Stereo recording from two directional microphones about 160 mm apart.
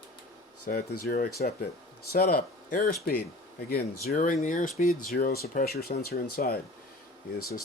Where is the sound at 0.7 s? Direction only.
70° left (ahead or behind).